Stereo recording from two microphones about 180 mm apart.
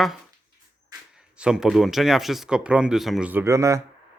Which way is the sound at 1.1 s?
5° right (ahead or behind).